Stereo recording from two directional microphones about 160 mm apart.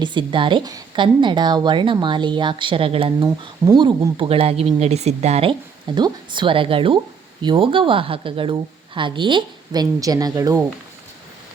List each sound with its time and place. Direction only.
0.0 s a woman's voice: 30° right (ahead or behind)